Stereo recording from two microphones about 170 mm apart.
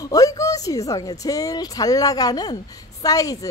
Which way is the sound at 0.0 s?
20° left (ahead or behind).